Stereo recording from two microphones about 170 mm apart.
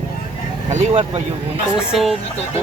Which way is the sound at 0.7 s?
45° right (ahead or behind).